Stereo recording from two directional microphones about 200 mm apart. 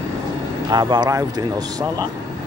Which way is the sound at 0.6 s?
20° right (ahead or behind).